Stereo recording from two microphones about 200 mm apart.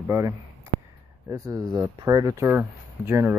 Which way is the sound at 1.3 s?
15° right (ahead or behind).